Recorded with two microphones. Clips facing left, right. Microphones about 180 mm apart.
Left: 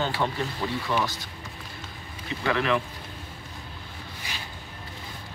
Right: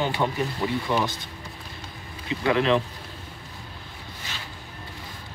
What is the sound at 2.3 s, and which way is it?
Speech, 20° right (ahead or behind).